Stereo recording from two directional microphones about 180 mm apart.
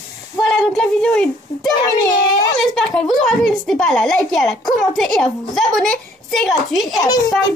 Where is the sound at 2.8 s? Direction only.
Centre (ahead or behind).